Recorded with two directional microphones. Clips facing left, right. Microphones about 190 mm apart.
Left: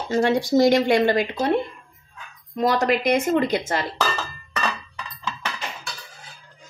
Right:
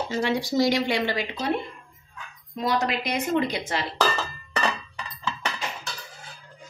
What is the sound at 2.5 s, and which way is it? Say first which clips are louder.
Speech: left 5 dB; 50° left (ahead or behind).